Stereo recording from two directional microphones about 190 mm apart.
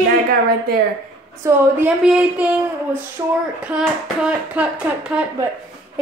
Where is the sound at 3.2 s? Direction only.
20° right (ahead or behind).